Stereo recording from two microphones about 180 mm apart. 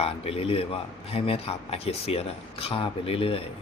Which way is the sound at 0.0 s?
30° left (ahead or behind).